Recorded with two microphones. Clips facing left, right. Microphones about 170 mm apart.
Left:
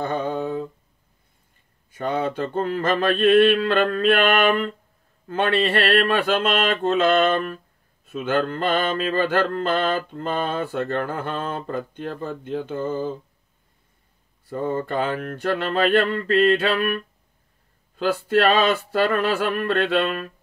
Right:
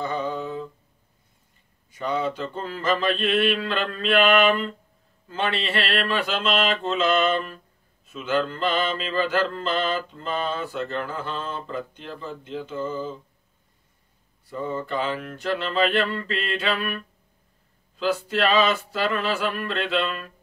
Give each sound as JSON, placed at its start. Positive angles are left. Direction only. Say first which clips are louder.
{"t": 0.0, "sound": "humming", "louder": "left 3 dB", "side_deg": 55}
{"t": 1.9, "sound": "mantra", "louder": "left 2 dB", "side_deg": 55}
{"t": 14.5, "sound": "a sound", "louder": "left 4 dB", "side_deg": 55}